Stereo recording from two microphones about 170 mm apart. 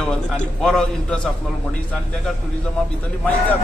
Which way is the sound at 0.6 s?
5° left (ahead or behind).